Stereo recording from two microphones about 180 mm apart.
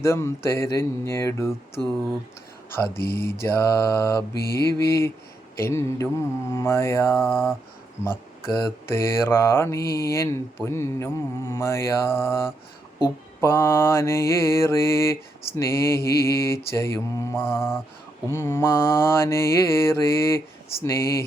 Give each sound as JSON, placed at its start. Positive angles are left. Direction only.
{"t": 0.0, "sound": "speech", "side_deg": 15}
{"t": 8.9, "sound": "speech", "side_deg": 15}